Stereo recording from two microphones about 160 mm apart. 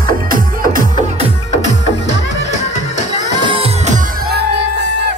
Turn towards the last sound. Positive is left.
turn(degrees=-35)  # may be behind; listen again after turning